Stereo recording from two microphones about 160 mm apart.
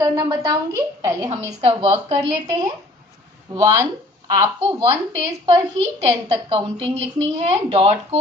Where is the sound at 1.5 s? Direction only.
40° right (ahead or behind).